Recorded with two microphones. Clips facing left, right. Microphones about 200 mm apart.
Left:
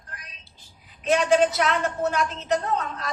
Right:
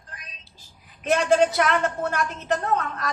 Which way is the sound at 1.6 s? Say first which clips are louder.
Right 1 dB; 50° right (ahead or behind).